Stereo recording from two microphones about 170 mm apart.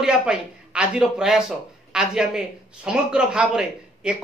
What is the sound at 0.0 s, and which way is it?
Speech, 5° right (ahead or behind).